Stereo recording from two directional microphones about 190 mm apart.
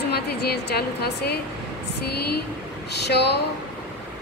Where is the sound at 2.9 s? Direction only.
60° left (ahead or behind).